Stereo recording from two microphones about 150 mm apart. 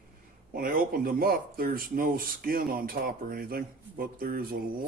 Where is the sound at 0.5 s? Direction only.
75° right (ahead or behind).